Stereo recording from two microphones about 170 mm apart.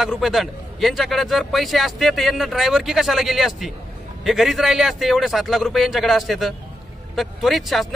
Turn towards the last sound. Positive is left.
turn(degrees=0)  # may be behind; listen again after turning